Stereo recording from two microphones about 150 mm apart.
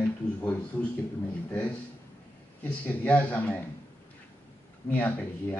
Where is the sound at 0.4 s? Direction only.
10° left (ahead or behind).